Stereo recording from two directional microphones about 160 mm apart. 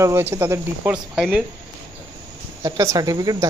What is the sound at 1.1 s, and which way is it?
Speech, 5° right (ahead or behind).